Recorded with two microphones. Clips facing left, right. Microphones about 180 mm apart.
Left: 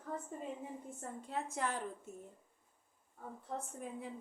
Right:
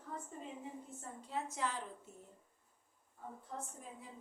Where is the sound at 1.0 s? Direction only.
50° left (ahead or behind).